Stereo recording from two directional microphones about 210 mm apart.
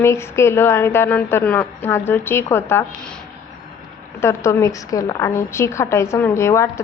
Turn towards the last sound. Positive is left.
turn(degrees=15)  # may be behind; listen again after turning